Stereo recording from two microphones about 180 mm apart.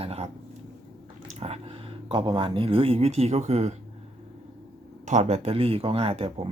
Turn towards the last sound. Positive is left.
turn(degrees=-30)  # may be behind; listen again after turning